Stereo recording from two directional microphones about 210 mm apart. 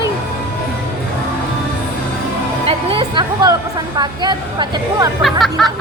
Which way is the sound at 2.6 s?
25° right (ahead or behind).